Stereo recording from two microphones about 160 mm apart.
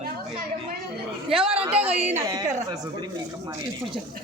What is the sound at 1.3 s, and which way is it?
Speech, 5° right (ahead or behind).